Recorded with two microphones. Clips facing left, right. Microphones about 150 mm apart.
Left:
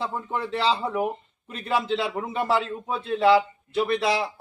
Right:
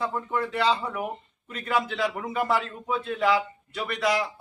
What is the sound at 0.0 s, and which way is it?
Speech, 25° left (ahead or behind).